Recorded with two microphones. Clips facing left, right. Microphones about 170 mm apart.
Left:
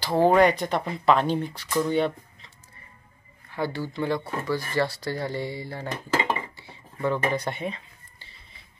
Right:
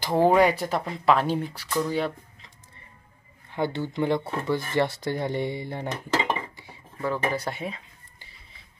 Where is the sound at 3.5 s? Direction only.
20° right (ahead or behind).